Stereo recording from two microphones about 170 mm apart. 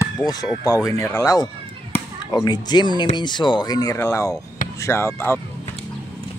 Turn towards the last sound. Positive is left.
turn(degrees=15)  # may be behind; listen again after turning